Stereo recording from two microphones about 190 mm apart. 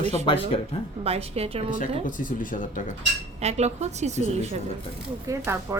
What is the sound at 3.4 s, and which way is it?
Speech, 35° right (ahead or behind).